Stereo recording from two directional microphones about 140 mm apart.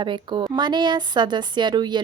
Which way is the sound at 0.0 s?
35° right (ahead or behind).